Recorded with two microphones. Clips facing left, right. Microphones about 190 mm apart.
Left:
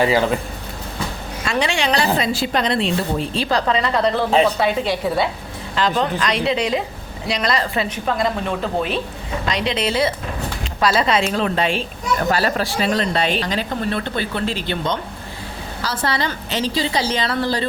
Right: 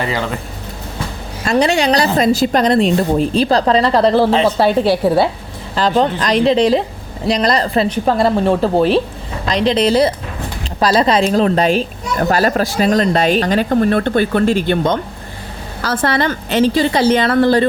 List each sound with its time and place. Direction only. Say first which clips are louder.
1.5 s a woman's voice: right 7 dB; 40° right (ahead or behind)